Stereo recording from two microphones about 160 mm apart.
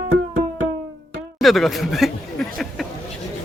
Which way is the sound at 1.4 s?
Centre (ahead or behind).